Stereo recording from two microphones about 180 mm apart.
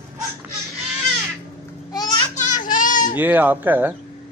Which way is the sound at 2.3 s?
45° left (ahead or behind).